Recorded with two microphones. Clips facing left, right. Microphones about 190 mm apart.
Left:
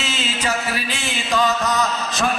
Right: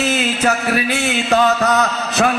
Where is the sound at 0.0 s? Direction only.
55° right (ahead or behind).